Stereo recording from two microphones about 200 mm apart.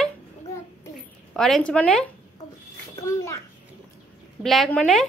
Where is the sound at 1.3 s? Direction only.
5° left (ahead or behind).